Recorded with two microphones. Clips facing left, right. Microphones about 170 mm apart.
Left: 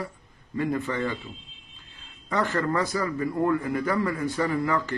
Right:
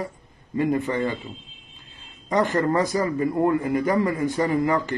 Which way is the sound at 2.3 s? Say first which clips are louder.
Right 5 dB; 20° right (ahead or behind).